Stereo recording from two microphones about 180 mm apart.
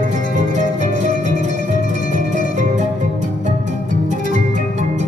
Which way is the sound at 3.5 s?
40° right (ahead or behind).